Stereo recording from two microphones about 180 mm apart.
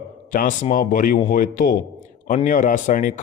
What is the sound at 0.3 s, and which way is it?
A man's voice, 45° left (ahead or behind).